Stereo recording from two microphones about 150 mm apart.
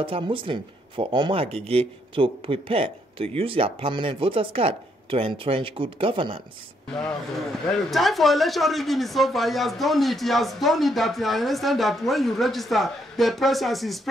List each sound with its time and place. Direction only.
0.0 s speech: 35° right (ahead or behind)
6.9 s a man's voice: 5° left (ahead or behind)